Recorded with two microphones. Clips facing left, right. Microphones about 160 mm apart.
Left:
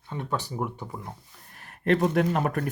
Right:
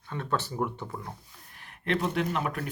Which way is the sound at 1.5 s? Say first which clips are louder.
Left 6 dB; 40° left (ahead or behind).